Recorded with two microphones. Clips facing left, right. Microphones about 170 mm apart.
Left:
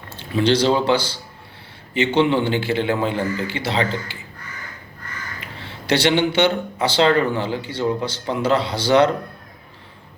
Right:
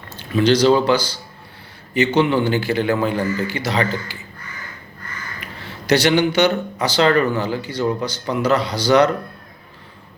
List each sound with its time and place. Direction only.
0.2 s speech: 25° left (ahead or behind)
5.4 s speech: 25° left (ahead or behind)